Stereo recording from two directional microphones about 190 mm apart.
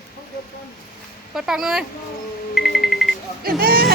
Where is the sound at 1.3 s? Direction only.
Centre (ahead or behind).